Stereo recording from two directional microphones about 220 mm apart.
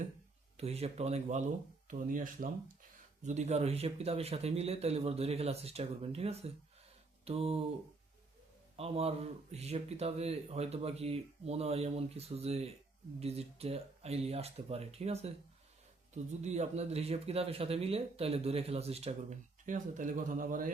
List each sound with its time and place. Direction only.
0.5 s speech: 30° right (ahead or behind)
8.7 s speech: 25° right (ahead or behind)